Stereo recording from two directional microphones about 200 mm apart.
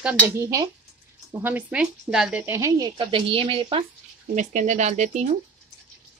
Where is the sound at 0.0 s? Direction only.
5° right (ahead or behind); by 3.8 s 25° right (ahead or behind).